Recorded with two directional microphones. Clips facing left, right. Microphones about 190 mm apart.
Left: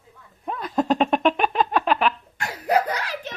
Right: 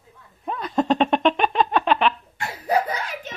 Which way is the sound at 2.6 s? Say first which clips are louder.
Left 1 dB; 70° left (ahead or behind).